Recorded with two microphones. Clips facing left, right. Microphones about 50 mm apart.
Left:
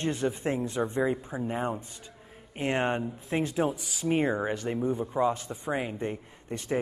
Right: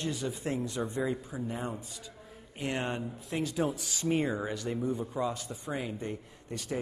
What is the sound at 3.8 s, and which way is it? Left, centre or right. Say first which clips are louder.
Speech: left 2 dB; centre.